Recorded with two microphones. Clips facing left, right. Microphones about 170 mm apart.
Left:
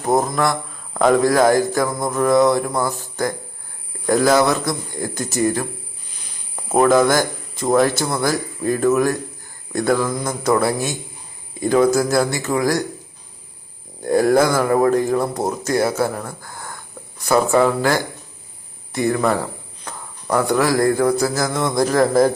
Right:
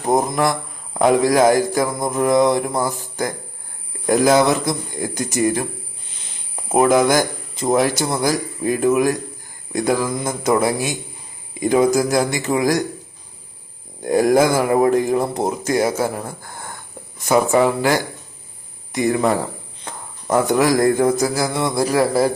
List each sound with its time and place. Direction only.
0.0 s mantra: 20° right (ahead or behind)
3.0 s speech: 15° right (ahead or behind)
6.7 s speech: 15° right (ahead or behind)
14.0 s speech: 15° right (ahead or behind)